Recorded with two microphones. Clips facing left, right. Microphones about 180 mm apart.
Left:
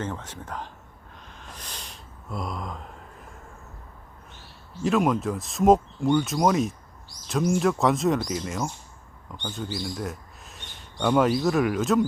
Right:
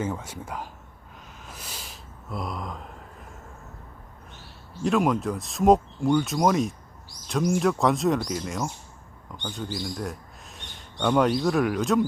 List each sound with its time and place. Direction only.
0.0 s speech: 10° right (ahead or behind)
1.4 s a sound: 5° right (ahead or behind)
4.8 s speech: centre (ahead or behind)